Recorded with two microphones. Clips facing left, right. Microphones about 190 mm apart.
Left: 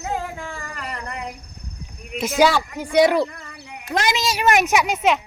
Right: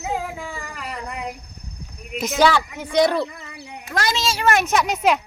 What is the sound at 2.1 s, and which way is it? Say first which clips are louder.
A child's voice: left 1 dB; 5° left (ahead or behind).